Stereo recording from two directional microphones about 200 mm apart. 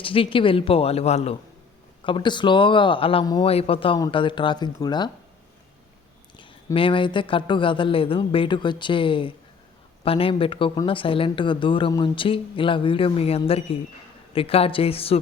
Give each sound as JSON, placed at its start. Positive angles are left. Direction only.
{"t": 0.0, "sound": "speech", "side_deg": 25}
{"t": 6.3, "sound": "speech", "side_deg": 25}